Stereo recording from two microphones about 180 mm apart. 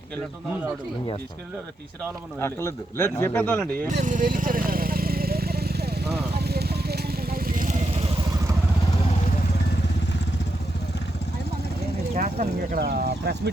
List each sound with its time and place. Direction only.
2.4 s a man's voice: 15° left (ahead or behind)
4.0 s vehicle: 45° right (ahead or behind)
12.1 s speech: 50° right (ahead or behind)